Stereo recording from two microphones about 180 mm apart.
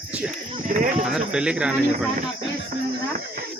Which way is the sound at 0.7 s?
50° right (ahead or behind).